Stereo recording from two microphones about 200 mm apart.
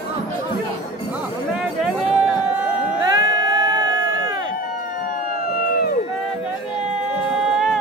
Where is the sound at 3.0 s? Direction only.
20° right (ahead or behind).